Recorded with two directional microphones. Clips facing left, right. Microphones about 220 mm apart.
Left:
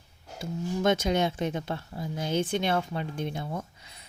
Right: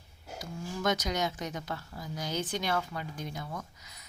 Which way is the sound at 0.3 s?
25° left (ahead or behind).